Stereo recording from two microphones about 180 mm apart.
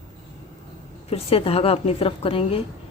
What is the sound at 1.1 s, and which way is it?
A woman's voice, 30° left (ahead or behind).